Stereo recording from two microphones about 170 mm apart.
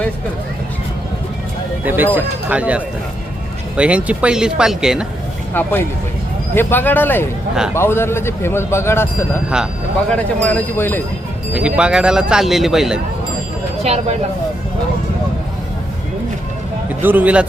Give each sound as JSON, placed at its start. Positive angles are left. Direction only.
{"t": 1.8, "sound": "speech", "side_deg": -10}
{"t": 5.5, "sound": "a man's voice", "side_deg": 10}
{"t": 10.2, "sound": "a man's voice", "side_deg": 10}
{"t": 11.5, "sound": "speech", "side_deg": -5}
{"t": 13.8, "sound": "speech", "side_deg": -40}
{"t": 17.0, "sound": "speech", "side_deg": -10}